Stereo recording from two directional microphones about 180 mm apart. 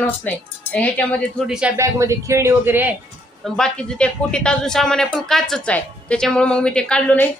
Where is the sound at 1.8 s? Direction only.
15° right (ahead or behind).